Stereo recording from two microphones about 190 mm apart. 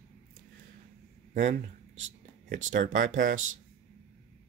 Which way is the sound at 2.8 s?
45° right (ahead or behind).